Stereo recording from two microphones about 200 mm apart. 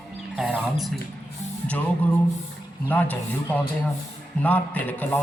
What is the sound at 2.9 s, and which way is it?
A man's voice, 10° left (ahead or behind).